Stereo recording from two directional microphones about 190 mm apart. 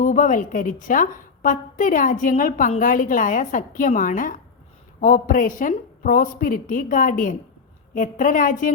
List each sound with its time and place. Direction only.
0.0 s a woman's voice: 45° left (ahead or behind)